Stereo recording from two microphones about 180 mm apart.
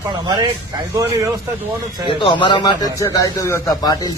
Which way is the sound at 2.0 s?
25° left (ahead or behind).